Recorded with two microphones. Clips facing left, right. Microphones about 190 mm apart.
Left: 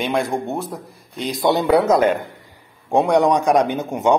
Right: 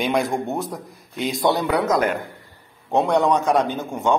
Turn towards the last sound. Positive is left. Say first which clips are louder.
# left 4 dB
turn(degrees=20)  # may be behind; listen again after turning